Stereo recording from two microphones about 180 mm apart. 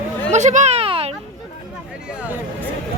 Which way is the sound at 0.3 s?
40° right (ahead or behind).